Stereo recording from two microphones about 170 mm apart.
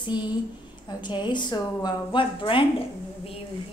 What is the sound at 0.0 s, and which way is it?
A woman's voice, 25° left (ahead or behind).